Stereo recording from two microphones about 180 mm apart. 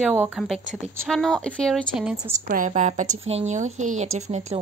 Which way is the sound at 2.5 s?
45° right (ahead or behind).